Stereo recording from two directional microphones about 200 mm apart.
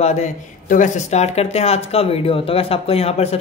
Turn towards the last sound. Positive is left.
turn(degrees=30)  # may be behind; listen again after turning